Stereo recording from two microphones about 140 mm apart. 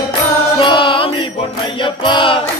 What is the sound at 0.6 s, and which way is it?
Music, 35° left (ahead or behind).